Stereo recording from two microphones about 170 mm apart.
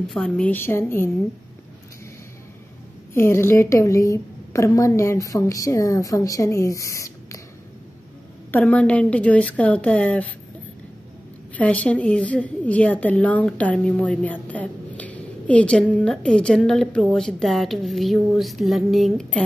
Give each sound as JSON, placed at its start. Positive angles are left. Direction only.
{"t": 0.1, "sound": "a woman's voice", "side_deg": 5}
{"t": 3.2, "sound": "a woman's voice", "side_deg": 15}
{"t": 8.5, "sound": "a woman's voice", "side_deg": 10}
{"t": 11.5, "sound": "a woman's voice", "side_deg": 10}